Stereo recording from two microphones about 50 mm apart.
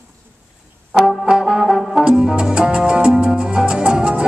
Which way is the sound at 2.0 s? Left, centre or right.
Centre.